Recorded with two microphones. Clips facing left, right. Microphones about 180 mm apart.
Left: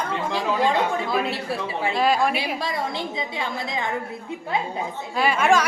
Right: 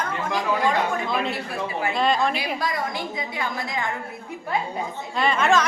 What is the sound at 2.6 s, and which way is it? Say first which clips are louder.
A woman's voice: even; 25° left (ahead or behind).